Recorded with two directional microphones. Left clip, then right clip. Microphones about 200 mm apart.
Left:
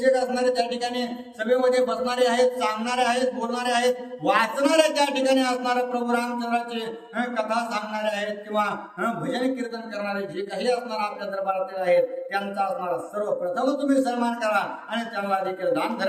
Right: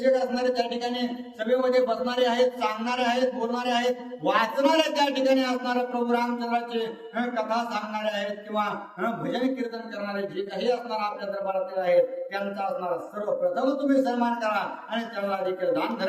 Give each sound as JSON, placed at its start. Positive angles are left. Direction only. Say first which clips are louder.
{"t": 0.0, "sound": "speech", "louder": "left 2 dB", "side_deg": 15}